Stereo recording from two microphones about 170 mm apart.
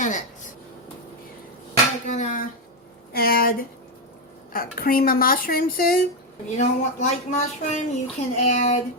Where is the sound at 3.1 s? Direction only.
60° left (ahead or behind).